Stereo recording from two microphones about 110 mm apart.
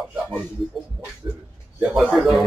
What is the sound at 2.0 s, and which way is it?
Speech, centre (ahead or behind).